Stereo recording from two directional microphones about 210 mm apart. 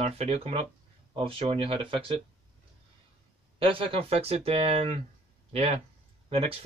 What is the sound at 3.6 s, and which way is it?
Speech, 25° right (ahead or behind).